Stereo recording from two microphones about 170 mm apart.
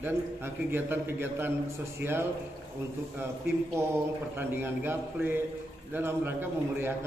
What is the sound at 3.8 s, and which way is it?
A man's voice, 15° right (ahead or behind).